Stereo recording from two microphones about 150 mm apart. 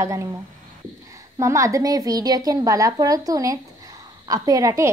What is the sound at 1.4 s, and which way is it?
A woman's voice, 20° right (ahead or behind).